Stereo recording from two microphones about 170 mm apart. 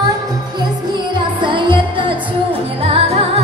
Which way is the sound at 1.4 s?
30° right (ahead or behind).